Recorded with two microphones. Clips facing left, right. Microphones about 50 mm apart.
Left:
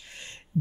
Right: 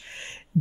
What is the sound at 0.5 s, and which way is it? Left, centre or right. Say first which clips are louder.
Beatboxing: right 3 dB; right.